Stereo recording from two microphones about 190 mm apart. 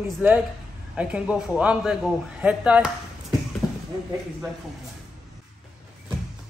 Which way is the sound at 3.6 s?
5° right (ahead or behind).